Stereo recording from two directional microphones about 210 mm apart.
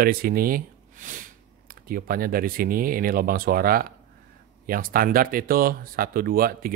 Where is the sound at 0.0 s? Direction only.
45° right (ahead or behind).